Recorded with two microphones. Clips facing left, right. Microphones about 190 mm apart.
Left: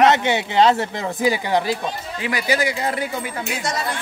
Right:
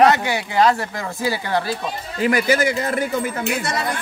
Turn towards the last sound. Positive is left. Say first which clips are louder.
# right 2 dB
turn(degrees=-60)  # may be behind; listen again after turning